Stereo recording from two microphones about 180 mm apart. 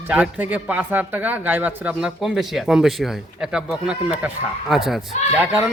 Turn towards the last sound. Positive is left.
turn(degrees=-10)  # may be behind; listen again after turning